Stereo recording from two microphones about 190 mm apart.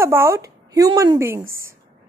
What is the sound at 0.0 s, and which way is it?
A woman's voice, 15° right (ahead or behind).